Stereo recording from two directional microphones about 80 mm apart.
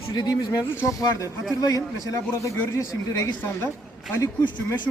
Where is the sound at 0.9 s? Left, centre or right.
Left.